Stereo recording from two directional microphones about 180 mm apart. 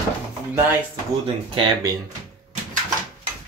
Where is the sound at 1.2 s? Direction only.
30° right (ahead or behind).